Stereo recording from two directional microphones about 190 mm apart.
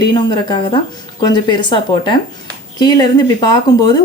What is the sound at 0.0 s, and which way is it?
Speech, 20° left (ahead or behind).